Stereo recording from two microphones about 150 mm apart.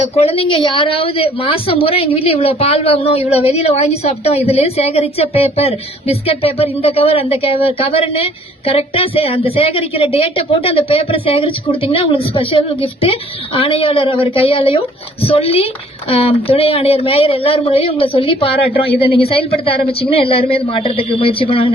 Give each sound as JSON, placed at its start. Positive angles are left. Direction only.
{"t": 0.2, "sound": "a woman's voice", "side_deg": 40}